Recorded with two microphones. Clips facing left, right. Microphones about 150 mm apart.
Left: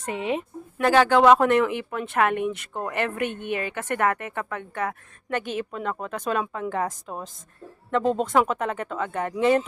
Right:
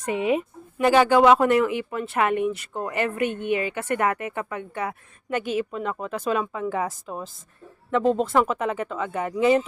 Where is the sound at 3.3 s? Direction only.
50° right (ahead or behind).